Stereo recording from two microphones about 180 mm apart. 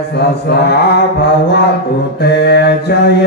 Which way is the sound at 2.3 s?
65° left (ahead or behind).